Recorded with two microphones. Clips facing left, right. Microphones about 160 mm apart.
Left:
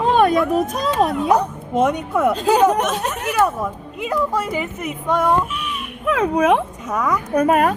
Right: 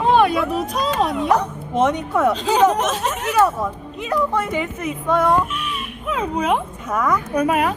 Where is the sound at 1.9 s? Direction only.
10° left (ahead or behind).